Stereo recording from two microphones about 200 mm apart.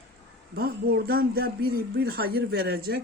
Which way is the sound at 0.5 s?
50° right (ahead or behind).